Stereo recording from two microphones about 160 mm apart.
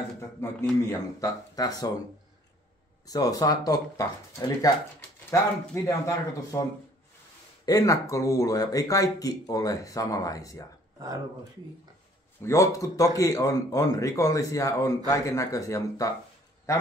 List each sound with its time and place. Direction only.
0.2 s speech: 20° left (ahead or behind)
3.1 s speech: 25° left (ahead or behind)
5.9 s speech: 20° left (ahead or behind)
7.6 s speech: 20° left (ahead or behind)
11.0 s speech: 25° right (ahead or behind)
12.4 s speech: 15° left (ahead or behind)